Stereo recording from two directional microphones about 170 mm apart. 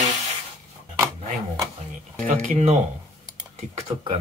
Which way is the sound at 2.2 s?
40° right (ahead or behind).